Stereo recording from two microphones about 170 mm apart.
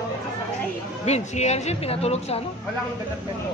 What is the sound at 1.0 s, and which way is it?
Speech, 40° left (ahead or behind).